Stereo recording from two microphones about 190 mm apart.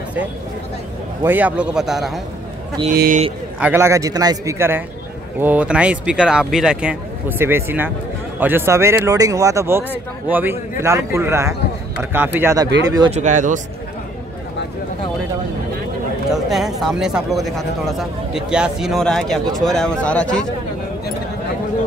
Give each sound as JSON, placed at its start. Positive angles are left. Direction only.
{"t": 1.2, "sound": "speech", "side_deg": -10}
{"t": 2.9, "sound": "speech", "side_deg": -50}
{"t": 3.5, "sound": "speech", "side_deg": -10}
{"t": 13.1, "sound": "speech", "side_deg": -40}
{"t": 16.4, "sound": "speech", "side_deg": 0}